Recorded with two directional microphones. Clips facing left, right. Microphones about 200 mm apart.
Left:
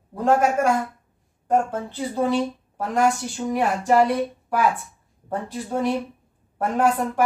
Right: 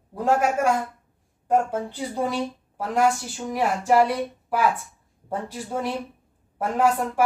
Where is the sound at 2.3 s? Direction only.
5° right (ahead or behind).